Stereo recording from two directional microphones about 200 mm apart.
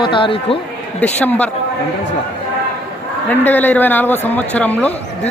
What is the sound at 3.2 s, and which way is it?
Speech, 10° left (ahead or behind).